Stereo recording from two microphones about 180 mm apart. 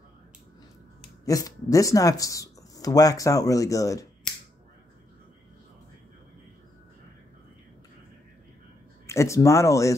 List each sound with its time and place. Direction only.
1.2 s speech: 20° left (ahead or behind)
9.0 s speech: 15° left (ahead or behind)